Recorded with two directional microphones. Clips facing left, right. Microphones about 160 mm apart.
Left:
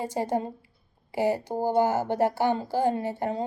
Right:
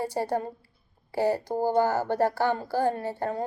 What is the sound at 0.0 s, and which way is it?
A woman's voice, 15° left (ahead or behind).